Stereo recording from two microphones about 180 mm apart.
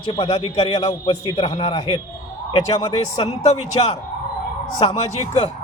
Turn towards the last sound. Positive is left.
turn(degrees=35)  # may be behind; listen again after turning